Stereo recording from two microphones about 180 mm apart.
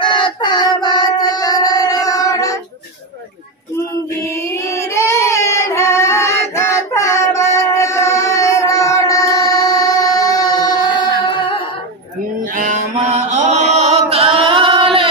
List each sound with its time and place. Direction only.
0.0 s child singing: 25° left (ahead or behind)
4.2 s child singing: 15° left (ahead or behind)
12.5 s chant: 45° right (ahead or behind); by 15.0 s 30° right (ahead or behind)